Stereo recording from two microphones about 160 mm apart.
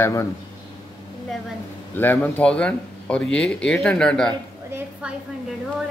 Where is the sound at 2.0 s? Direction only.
10° left (ahead or behind).